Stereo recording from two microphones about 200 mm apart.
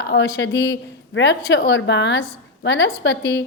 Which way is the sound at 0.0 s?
60° left (ahead or behind).